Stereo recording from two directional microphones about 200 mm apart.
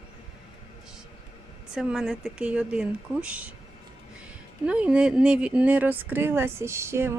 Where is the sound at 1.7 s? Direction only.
5° right (ahead or behind).